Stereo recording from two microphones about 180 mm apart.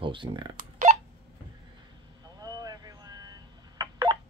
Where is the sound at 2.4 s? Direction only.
20° right (ahead or behind).